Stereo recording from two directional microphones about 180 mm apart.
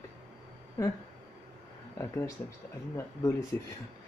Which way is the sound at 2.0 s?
15° left (ahead or behind).